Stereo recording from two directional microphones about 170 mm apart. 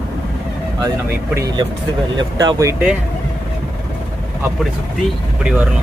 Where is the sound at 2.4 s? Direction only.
20° right (ahead or behind).